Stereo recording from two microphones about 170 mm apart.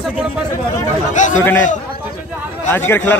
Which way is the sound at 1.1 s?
45° left (ahead or behind).